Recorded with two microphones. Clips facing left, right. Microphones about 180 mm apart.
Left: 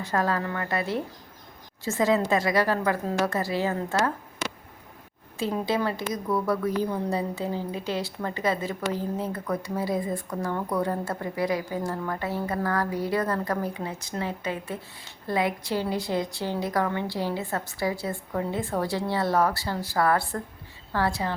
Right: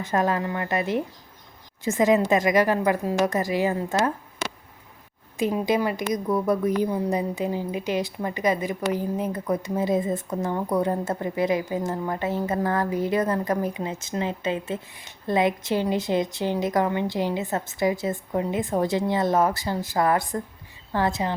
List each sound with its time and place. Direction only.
0.0 s a woman's voice: 20° right (ahead or behind)